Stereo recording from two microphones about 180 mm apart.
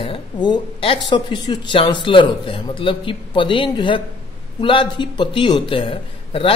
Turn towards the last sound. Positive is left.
turn(degrees=30)  # may be behind; listen again after turning